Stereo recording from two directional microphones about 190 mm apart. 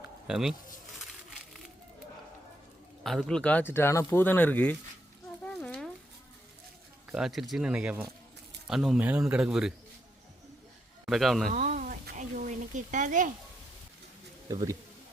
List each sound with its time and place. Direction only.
0.3 s speech: centre (ahead or behind)
3.0 s speech: centre (ahead or behind)
5.5 s a sound: 5° left (ahead or behind)
7.1 s speech: centre (ahead or behind)
11.0 s speech: centre (ahead or behind)
11.4 s a sound: 40° right (ahead or behind)
14.4 s speech: 20° right (ahead or behind)